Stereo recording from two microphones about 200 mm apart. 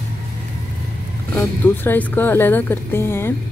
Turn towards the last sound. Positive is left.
turn(degrees=10)  # may be behind; listen again after turning